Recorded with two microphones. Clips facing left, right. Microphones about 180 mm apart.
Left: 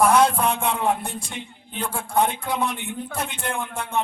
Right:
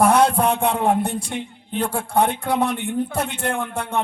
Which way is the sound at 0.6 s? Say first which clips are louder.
Right 4 dB; 55° right (ahead or behind).